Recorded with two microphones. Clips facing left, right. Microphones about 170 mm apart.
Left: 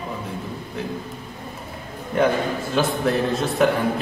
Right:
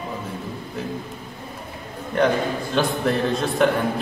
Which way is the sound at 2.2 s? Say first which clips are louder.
Even; 5° left (ahead or behind).